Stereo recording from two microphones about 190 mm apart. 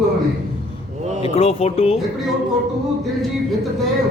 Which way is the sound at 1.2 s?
30° left (ahead or behind).